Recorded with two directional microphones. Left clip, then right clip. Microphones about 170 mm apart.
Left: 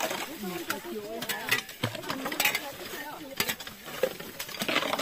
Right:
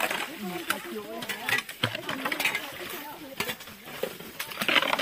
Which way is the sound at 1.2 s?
15° left (ahead or behind).